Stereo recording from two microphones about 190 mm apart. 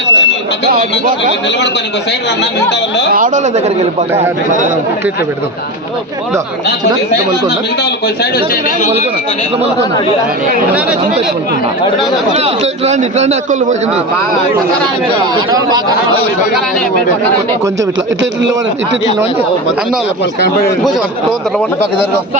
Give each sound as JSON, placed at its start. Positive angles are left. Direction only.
{"t": 0.1, "sound": "alarm", "side_deg": 70}
{"t": 2.4, "sound": "speech", "side_deg": 65}
{"t": 3.1, "sound": "speech", "side_deg": -40}
{"t": 12.4, "sound": "a man's voice", "side_deg": -35}
{"t": 20.4, "sound": "speech", "side_deg": 55}